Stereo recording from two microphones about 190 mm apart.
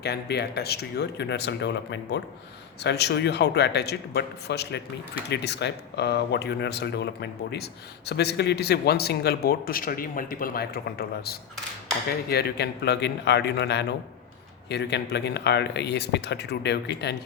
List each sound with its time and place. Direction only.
0.0 s speech: 60° left (ahead or behind)